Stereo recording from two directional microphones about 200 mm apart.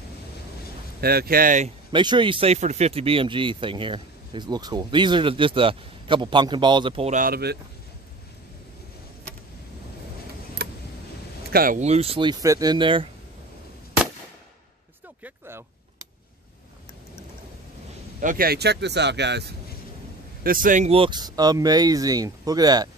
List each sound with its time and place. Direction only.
1.0 s speech: 50° right (ahead or behind)
1.9 s speech: 25° right (ahead or behind)
7.2 s speech: 50° right (ahead or behind)
11.5 s speech: 45° right (ahead or behind); by 13.1 s 25° right (ahead or behind)
15.2 s a sound: 10° right (ahead or behind)
18.2 s speech: 45° right (ahead or behind)
20.4 s speech: 45° right (ahead or behind); by 22.8 s 20° right (ahead or behind)